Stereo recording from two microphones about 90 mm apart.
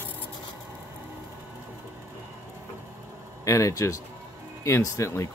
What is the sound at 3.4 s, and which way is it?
Speech, 35° left (ahead or behind).